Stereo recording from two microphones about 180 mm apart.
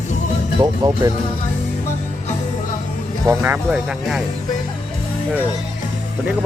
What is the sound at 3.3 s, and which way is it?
Speech, 10° right (ahead or behind).